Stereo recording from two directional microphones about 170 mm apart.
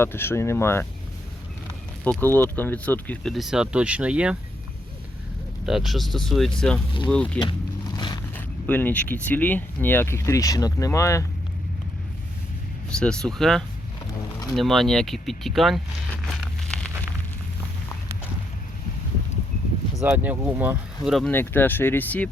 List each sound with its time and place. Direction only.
0.0 s speech: 15° left (ahead or behind)
2.0 s speech: 10° left (ahead or behind)
5.6 s speech: centre (ahead or behind)
7.3 s a sound: 25° left (ahead or behind)
8.4 s speech: 10° left (ahead or behind)
13.0 s speech: 5° left (ahead or behind)
20.0 s speech: 15° right (ahead or behind)
21.2 s speech: 10° left (ahead or behind)